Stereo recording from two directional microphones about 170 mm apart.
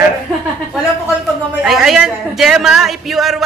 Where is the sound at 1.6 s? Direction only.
Centre (ahead or behind).